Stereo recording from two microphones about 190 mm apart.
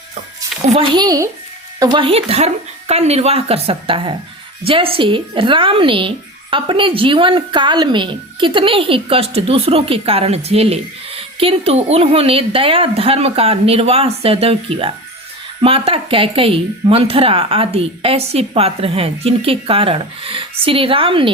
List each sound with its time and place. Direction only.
0.7 s speech: 25° right (ahead or behind)